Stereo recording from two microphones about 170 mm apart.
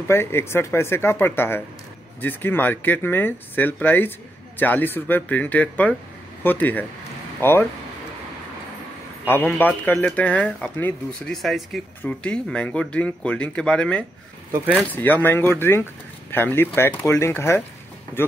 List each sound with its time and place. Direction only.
0.1 s speech: 15° left (ahead or behind)
9.2 s speech: 10° left (ahead or behind)